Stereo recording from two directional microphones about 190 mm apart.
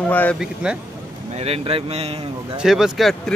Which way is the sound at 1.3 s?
30° right (ahead or behind).